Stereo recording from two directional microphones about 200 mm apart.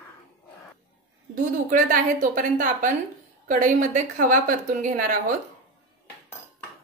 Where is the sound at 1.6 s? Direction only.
45° right (ahead or behind).